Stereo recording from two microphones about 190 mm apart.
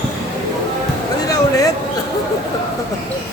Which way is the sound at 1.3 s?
20° left (ahead or behind).